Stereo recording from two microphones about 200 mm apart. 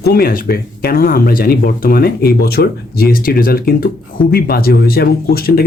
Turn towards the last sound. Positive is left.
turn(degrees=50)  # may be behind; listen again after turning